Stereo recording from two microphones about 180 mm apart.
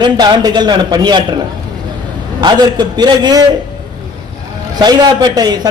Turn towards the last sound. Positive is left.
turn(degrees=-25)  # may be behind; listen again after turning